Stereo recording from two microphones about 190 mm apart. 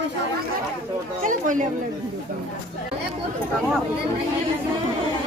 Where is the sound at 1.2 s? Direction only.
45° right (ahead or behind).